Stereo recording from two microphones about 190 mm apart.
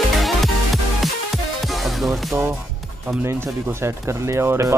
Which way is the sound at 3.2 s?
15° right (ahead or behind).